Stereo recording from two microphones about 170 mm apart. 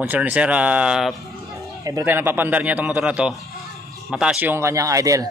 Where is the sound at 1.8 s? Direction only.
15° right (ahead or behind).